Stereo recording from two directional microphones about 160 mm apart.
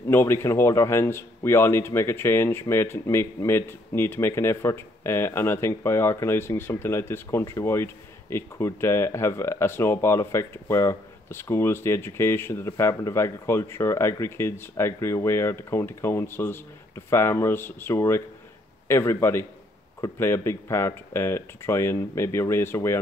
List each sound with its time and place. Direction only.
0.1 s a man's voice: 15° left (ahead or behind)